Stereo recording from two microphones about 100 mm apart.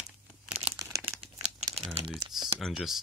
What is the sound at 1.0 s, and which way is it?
Crumpling, 80° right.